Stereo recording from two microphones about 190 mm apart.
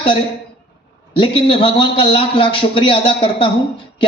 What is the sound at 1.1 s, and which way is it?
A man's voice, 25° left (ahead or behind).